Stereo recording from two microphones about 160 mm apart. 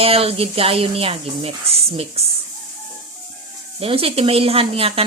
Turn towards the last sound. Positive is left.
turn(degrees=-35)  # may be behind; listen again after turning